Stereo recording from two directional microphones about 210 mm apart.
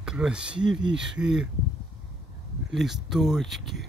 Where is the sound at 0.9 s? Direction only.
55° right (ahead or behind).